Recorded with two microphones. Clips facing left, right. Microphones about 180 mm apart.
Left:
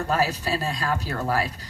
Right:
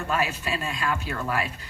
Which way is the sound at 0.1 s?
35° left (ahead or behind).